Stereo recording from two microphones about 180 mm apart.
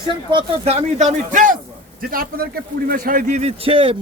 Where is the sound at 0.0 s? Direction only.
25° right (ahead or behind).